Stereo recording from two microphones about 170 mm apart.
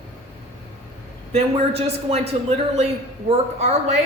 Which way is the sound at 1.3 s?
40° right (ahead or behind).